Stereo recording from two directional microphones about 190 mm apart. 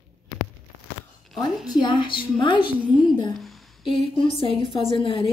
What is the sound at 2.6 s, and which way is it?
Speech, 10° right (ahead or behind).